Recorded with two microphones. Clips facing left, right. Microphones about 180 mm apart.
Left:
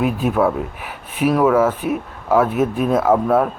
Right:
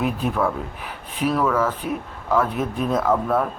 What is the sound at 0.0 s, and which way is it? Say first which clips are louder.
Speech: left 5 dB; 5° left (ahead or behind).